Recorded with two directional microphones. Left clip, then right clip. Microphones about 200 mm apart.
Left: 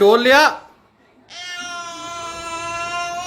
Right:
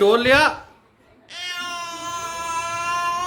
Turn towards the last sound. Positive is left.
turn(degrees=-15)  # may be behind; listen again after turning